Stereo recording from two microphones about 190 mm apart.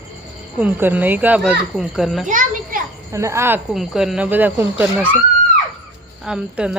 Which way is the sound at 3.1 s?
15° right (ahead or behind).